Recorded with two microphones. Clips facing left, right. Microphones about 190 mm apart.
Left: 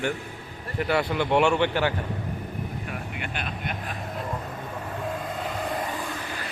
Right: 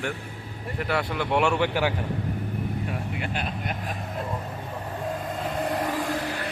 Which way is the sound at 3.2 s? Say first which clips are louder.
Right 2 dB; 35° right (ahead or behind).